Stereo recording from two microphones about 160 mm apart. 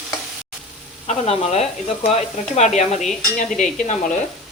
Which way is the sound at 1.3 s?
40° left (ahead or behind).